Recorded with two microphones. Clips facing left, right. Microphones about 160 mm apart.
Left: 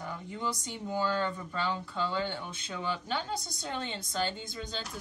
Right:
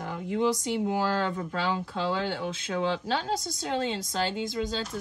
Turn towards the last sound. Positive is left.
turn(degrees=-90)